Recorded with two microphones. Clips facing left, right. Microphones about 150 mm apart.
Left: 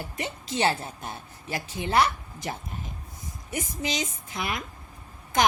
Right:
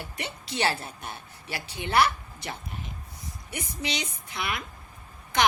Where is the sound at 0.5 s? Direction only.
30° left (ahead or behind).